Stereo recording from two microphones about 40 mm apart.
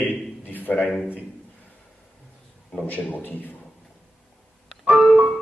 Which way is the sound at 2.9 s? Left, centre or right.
Left.